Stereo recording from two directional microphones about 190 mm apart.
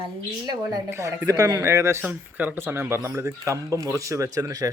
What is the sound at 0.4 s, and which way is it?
Speech, 15° right (ahead or behind).